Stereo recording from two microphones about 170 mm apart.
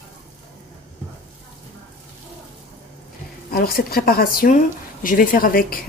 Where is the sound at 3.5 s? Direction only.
60° left (ahead or behind).